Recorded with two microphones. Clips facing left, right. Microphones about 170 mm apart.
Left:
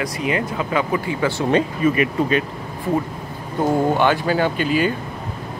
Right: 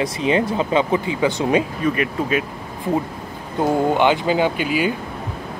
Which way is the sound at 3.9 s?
15° right (ahead or behind).